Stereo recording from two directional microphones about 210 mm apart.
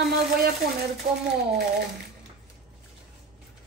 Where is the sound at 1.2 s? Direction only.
50° right (ahead or behind).